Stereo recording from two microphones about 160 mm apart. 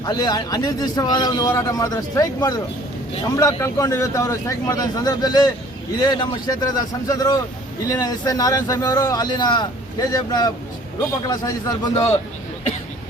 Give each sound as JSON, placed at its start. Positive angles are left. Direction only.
{"t": 0.0, "sound": "a man's voice", "side_deg": 25}